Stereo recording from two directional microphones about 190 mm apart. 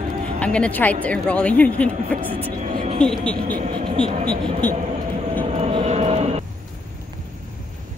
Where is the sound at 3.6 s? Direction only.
25° right (ahead or behind).